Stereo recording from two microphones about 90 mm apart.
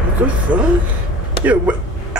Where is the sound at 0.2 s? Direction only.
15° right (ahead or behind).